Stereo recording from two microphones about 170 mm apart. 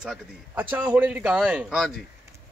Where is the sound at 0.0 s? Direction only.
5° right (ahead or behind).